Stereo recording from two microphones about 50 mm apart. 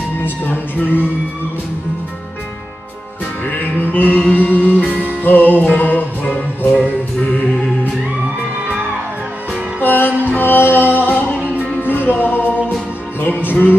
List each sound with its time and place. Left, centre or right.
0.2 s music: left
3.4 s music: left
9.8 s music: left